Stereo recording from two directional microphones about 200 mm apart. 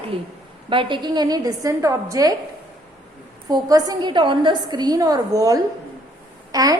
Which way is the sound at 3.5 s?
20° right (ahead or behind).